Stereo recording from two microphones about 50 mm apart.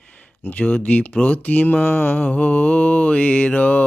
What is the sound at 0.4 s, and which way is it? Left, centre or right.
Mantra, left.